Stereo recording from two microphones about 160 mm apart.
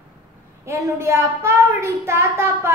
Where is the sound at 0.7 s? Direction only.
15° right (ahead or behind).